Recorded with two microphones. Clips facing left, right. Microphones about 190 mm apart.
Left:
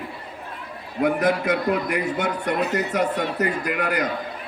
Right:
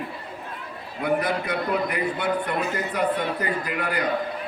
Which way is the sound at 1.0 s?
45° left (ahead or behind).